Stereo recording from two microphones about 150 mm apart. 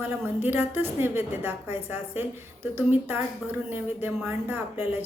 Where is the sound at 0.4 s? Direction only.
15° right (ahead or behind).